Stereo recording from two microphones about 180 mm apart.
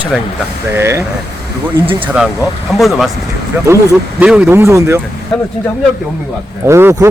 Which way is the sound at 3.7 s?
15° right (ahead or behind).